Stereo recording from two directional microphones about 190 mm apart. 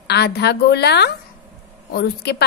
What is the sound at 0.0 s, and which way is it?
A woman's voice, 60° left (ahead or behind).